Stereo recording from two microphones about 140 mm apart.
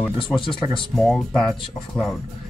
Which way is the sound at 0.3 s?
5° right (ahead or behind).